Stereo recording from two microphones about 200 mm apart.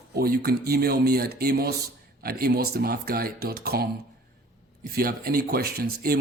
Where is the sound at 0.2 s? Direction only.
50° right (ahead or behind).